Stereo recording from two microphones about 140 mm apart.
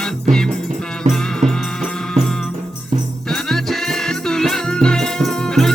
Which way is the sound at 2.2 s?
55° right (ahead or behind).